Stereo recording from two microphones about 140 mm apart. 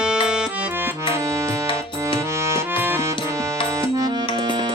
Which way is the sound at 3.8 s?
25° right (ahead or behind).